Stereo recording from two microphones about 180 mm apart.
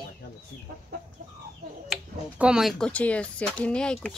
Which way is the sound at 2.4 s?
5° right (ahead or behind).